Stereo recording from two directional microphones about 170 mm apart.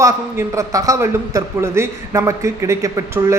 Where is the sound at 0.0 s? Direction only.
20° right (ahead or behind).